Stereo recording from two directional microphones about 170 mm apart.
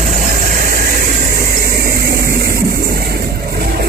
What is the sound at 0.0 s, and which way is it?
Vehicle, 55° right (ahead or behind).